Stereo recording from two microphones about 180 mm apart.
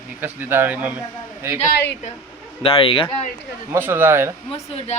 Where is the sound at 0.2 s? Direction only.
10° right (ahead or behind).